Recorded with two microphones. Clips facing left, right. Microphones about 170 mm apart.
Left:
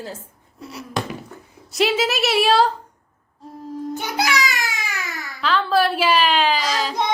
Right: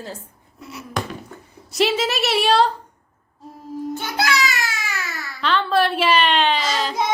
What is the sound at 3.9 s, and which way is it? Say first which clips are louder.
Music: even; 15° left (ahead or behind).